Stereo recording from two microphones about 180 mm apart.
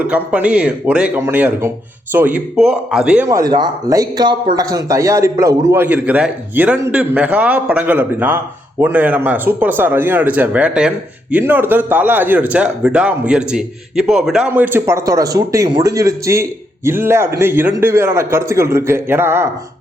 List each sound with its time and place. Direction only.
0.0 s speech: 10° right (ahead or behind)
3.2 s a man's voice: 20° right (ahead or behind)